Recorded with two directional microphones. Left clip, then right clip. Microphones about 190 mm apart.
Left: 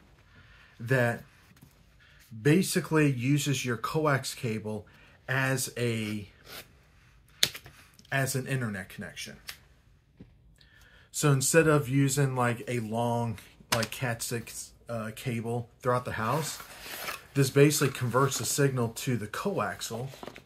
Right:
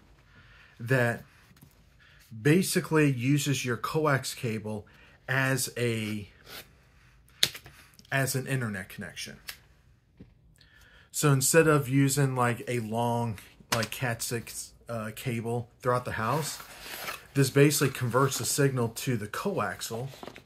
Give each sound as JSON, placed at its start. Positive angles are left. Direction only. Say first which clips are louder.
{"t": 0.6, "sound": "speech", "louder": "even", "side_deg": -40}
{"t": 2.4, "sound": "speech", "louder": "right 1 dB", "side_deg": -40}
{"t": 7.3, "sound": "a sound", "louder": "right 1 dB", "side_deg": -5}
{"t": 8.1, "sound": "speech", "louder": "right 1 dB", "side_deg": -45}
{"t": 11.1, "sound": "speech", "louder": "right 1 dB", "side_deg": -45}
{"t": 16.4, "sound": "speech", "louder": "even", "side_deg": -5}
{"t": 17.3, "sound": "speech", "louder": "even", "side_deg": -40}
{"t": 20.1, "sound": "speech", "louder": "even", "side_deg": -5}